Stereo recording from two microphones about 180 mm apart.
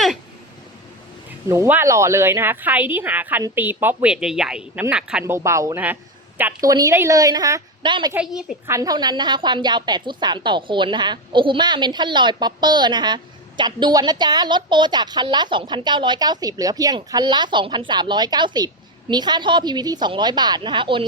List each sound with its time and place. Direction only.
1.5 s speech: 15° right (ahead or behind)
5.2 s speech: 15° right (ahead or behind)
8.1 s a woman's voice: 5° right (ahead or behind)
8.6 s a woman's voice: 20° right (ahead or behind)